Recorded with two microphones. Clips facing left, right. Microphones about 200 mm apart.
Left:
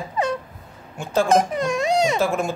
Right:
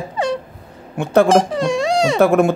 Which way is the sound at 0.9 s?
65° right (ahead or behind).